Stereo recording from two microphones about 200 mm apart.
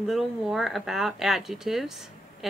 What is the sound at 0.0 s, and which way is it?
Speech, centre (ahead or behind).